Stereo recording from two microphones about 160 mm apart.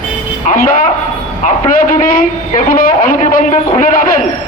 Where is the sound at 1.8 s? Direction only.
60° left (ahead or behind).